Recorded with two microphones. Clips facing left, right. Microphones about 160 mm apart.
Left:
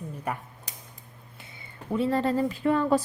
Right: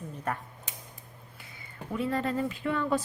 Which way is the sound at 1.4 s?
25° left (ahead or behind).